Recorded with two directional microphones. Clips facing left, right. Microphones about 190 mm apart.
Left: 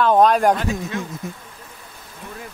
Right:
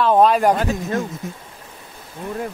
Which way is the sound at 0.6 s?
45° right (ahead or behind).